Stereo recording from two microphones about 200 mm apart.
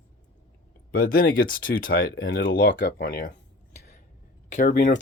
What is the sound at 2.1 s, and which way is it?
Speech, 70° left (ahead or behind).